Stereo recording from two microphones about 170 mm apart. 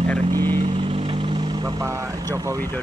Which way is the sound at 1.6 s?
15° right (ahead or behind).